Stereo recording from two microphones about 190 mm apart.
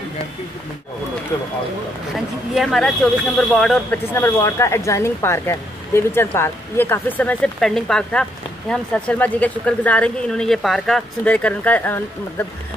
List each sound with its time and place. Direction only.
2.1 s speech: centre (ahead or behind)